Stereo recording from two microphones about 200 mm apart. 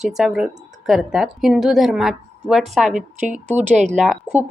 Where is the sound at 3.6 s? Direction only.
35° right (ahead or behind).